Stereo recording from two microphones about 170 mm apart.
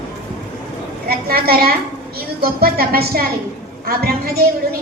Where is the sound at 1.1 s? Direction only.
65° right (ahead or behind).